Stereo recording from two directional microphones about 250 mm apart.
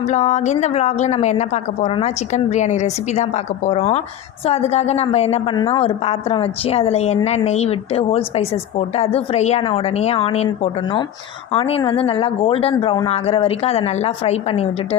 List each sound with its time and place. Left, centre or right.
0.1 s a woman's voice: left